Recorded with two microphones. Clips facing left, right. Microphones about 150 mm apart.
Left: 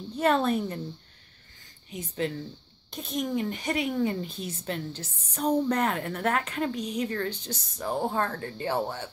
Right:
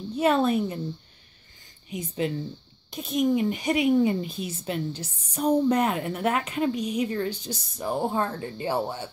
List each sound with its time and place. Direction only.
0.1 s speech: 10° right (ahead or behind)
1.9 s speech: 15° right (ahead or behind)